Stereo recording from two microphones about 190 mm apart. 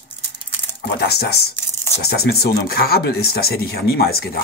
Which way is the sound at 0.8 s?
55° left (ahead or behind).